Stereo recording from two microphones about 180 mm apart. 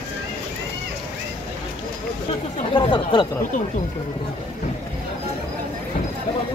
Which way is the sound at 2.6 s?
25° left (ahead or behind).